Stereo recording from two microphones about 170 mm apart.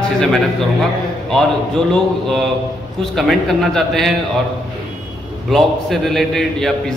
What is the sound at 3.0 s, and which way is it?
A man's voice, centre (ahead or behind).